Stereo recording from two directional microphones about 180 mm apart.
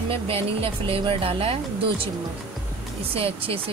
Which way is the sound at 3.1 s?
30° right (ahead or behind).